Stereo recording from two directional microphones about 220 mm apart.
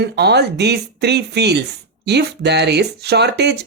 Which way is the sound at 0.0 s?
50° right (ahead or behind).